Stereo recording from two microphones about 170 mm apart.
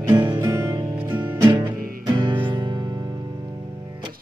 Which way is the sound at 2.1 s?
25° right (ahead or behind).